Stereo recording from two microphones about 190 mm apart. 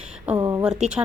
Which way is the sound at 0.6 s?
5° right (ahead or behind).